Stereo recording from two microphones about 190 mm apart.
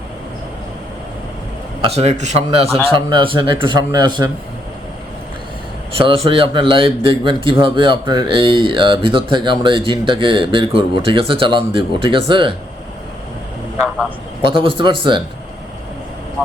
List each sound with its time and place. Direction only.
1.8 s a man's voice: 35° right (ahead or behind)
2.9 s speech: 25° right (ahead or behind)
6.0 s speech: 30° right (ahead or behind)
14.4 s speech: 30° right (ahead or behind)